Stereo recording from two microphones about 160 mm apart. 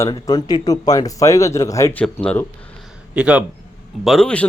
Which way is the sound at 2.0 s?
5° left (ahead or behind).